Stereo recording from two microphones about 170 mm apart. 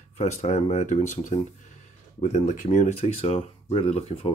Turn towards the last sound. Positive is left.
turn(degrees=35)  # may be behind; listen again after turning